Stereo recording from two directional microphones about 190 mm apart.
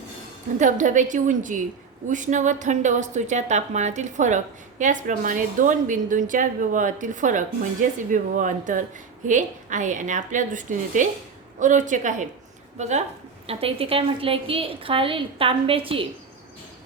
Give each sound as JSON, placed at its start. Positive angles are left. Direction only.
{"t": 0.6, "sound": "a woman's voice", "side_deg": -40}